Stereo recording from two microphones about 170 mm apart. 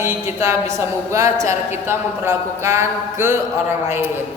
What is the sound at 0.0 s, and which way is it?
Mantra, 15° right (ahead or behind).